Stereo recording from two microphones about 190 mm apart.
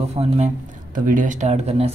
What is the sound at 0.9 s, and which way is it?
Speech, 45° right (ahead or behind).